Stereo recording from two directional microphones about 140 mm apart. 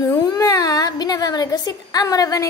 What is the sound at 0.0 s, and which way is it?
A woman's voice, 30° left (ahead or behind).